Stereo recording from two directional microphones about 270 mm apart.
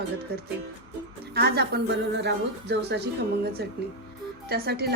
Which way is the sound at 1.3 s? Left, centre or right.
Right.